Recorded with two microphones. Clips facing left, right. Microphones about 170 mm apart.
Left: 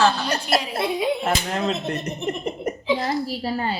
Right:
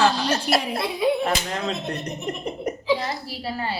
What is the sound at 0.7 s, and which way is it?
Speech, 25° left (ahead or behind).